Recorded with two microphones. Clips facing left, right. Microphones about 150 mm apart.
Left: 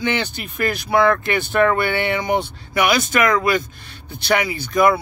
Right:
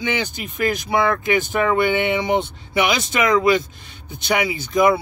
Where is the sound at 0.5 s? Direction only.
70° left (ahead or behind).